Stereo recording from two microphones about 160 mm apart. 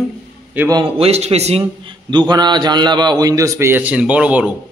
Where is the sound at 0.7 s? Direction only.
35° right (ahead or behind).